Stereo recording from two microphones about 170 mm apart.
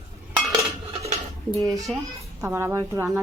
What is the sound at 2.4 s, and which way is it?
Speech, 15° right (ahead or behind).